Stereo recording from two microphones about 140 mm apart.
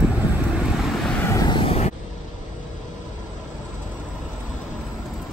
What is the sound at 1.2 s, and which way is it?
Vehicle, 25° left (ahead or behind).